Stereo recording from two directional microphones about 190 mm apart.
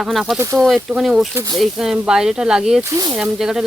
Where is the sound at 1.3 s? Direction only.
20° right (ahead or behind).